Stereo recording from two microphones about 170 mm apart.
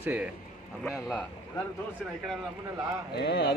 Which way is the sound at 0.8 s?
Centre (ahead or behind).